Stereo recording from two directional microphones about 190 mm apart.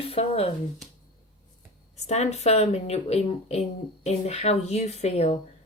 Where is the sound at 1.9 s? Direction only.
35° left (ahead or behind).